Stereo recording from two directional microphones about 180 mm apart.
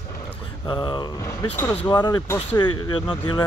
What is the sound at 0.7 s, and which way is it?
Speech, 25° left (ahead or behind).